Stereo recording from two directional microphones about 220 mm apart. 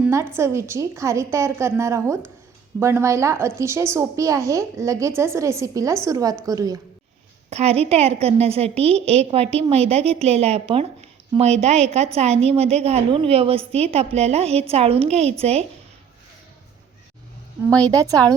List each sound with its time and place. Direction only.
0.0 s a sound: 10° right (ahead or behind)
0.3 s a woman's voice: 10° right (ahead or behind)
7.5 s a woman's voice: 30° right (ahead or behind)
17.8 s a woman's voice: 15° right (ahead or behind)